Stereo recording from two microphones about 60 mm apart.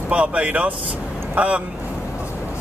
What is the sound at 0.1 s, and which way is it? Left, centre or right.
Speech, right.